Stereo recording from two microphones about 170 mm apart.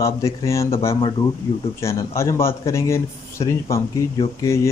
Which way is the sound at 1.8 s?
15° left (ahead or behind).